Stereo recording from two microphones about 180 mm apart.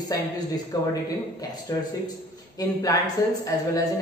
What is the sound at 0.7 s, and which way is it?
Speech, 20° left (ahead or behind).